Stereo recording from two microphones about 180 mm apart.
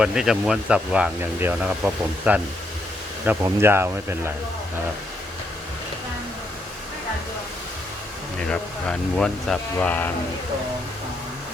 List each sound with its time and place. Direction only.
0.0 s speech: 5° right (ahead or behind)
8.4 s speech: 5° left (ahead or behind)